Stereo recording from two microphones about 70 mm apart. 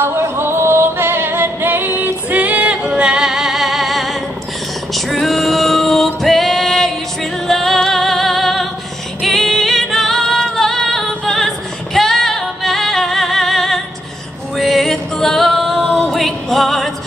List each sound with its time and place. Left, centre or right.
0.0 s music: right; by 8.6 s centre
9.2 s singing: centre
11.3 s female singing: centre
14.6 s music: centre